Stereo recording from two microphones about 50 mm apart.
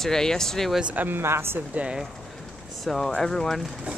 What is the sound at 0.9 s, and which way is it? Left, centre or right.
Speech, right.